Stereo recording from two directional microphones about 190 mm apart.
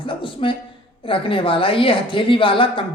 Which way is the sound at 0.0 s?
25° left (ahead or behind).